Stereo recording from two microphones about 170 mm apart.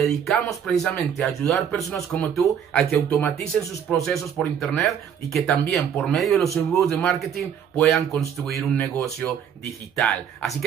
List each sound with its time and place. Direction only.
0.0 s speech: centre (ahead or behind)
8.1 s speech: 15° left (ahead or behind)
8.5 s speech: centre (ahead or behind)
8.8 s speech: 10° left (ahead or behind)
9.7 s speech: centre (ahead or behind)